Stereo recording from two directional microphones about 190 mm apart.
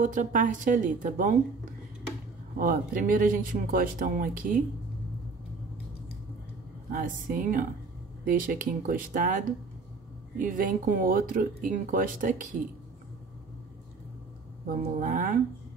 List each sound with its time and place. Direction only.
0.0 s speech: 45° right (ahead or behind)
2.6 s speech: 50° right (ahead or behind)
6.9 s speech: 45° right (ahead or behind)
15.0 s speech: 45° right (ahead or behind)